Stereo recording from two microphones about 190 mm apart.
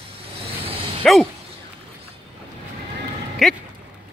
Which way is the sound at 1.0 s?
5° left (ahead or behind).